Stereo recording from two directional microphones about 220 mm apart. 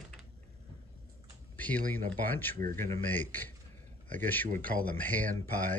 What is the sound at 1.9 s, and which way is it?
Speech, 10° left (ahead or behind).